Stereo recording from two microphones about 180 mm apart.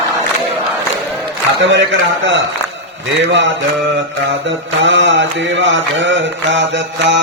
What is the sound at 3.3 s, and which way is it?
Mantra, 90° right.